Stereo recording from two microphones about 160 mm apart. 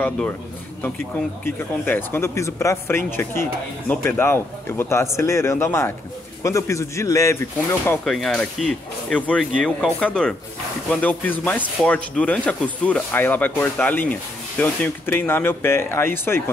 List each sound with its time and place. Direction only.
0.8 s speech: 10° left (ahead or behind)
8.0 s speech: centre (ahead or behind)